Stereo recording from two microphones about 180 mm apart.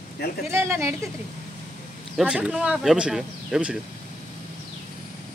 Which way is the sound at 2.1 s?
5° right (ahead or behind).